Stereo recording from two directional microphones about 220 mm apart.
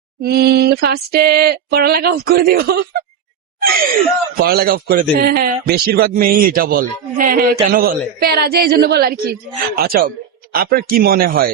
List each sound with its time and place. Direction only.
0.2 s a man's voice: 45° right (ahead or behind)
4.4 s a man's voice: 45° right (ahead or behind)